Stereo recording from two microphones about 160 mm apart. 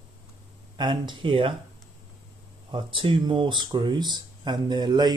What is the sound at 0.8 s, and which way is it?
Speech, 30° right (ahead or behind).